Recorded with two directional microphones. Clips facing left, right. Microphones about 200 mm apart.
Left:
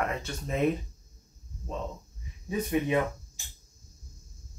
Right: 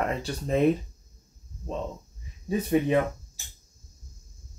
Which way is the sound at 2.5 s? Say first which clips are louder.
Right 4 dB; 35° right (ahead or behind).